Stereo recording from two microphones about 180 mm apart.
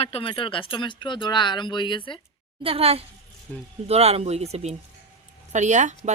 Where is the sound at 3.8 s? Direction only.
35° right (ahead or behind).